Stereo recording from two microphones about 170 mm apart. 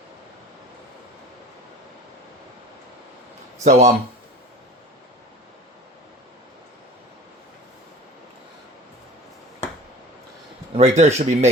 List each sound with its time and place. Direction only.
3.6 s speech: 45° right (ahead or behind)
10.8 s speech: 40° right (ahead or behind)